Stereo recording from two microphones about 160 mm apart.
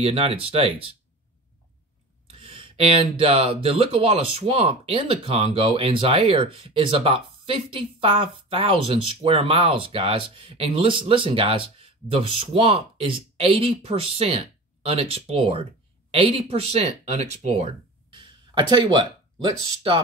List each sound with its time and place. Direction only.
0.0 s speech: 35° right (ahead or behind)
2.3 s speech: 35° right (ahead or behind)
18.1 s speech: 30° right (ahead or behind)